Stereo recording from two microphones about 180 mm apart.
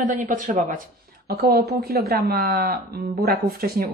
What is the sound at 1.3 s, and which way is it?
Speech, 60° right (ahead or behind).